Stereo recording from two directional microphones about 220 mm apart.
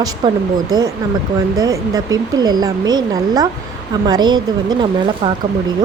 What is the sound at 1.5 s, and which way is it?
Speech, 15° right (ahead or behind).